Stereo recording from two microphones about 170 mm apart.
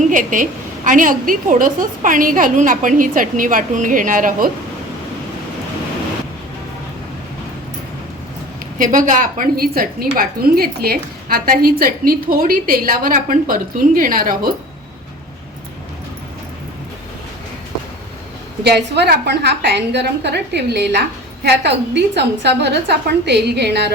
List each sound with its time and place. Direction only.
0.0 s a woman's voice: 50° right (ahead or behind)
8.8 s a woman's voice: 50° right (ahead or behind)
18.6 s a woman's voice: 75° right (ahead or behind)